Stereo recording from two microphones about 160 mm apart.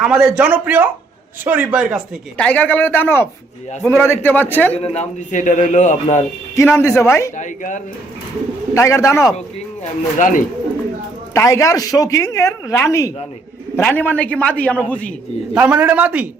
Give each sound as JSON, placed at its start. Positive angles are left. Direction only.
{"t": 0.0, "sound": "a man's voice", "side_deg": -5}
{"t": 2.4, "sound": "speech", "side_deg": 10}
{"t": 4.7, "sound": "speech", "side_deg": 40}
{"t": 6.6, "sound": "speech", "side_deg": 15}
{"t": 7.3, "sound": "speech", "side_deg": 55}
{"t": 8.7, "sound": "speech", "side_deg": 20}
{"t": 10.2, "sound": "speech", "side_deg": 55}
{"t": 11.3, "sound": "speech", "side_deg": 20}
{"t": 15.5, "sound": "a man's voice", "side_deg": -10}